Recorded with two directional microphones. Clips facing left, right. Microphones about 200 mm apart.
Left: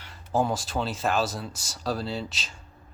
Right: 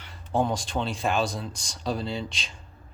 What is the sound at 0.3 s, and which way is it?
Speech, 5° left (ahead or behind).